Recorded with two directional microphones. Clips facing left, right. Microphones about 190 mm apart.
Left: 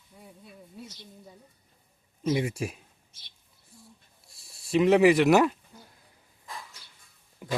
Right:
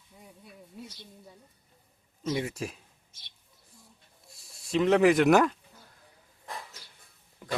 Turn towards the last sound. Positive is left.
turn(degrees=10)  # may be behind; listen again after turning